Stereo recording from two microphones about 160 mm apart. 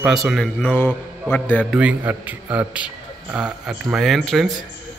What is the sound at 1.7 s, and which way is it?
A man's voice, 5° right (ahead or behind).